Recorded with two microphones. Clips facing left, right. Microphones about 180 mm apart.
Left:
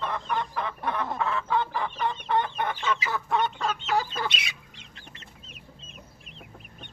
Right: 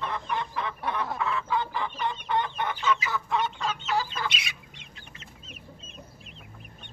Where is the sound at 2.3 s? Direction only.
45° left (ahead or behind).